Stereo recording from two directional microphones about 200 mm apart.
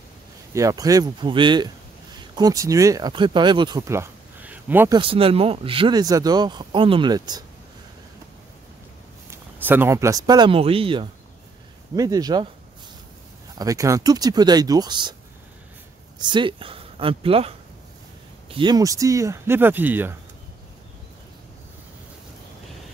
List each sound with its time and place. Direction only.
0.6 s speech: 15° right (ahead or behind)
4.9 s speech: 25° right (ahead or behind)
9.3 s speech: 10° right (ahead or behind)
13.6 s speech: 15° right (ahead or behind)
16.2 s speech: 20° right (ahead or behind)